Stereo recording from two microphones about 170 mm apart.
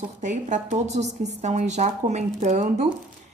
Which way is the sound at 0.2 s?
45° right (ahead or behind).